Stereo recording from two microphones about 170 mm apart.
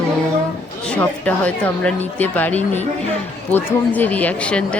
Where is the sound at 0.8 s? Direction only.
5° left (ahead or behind).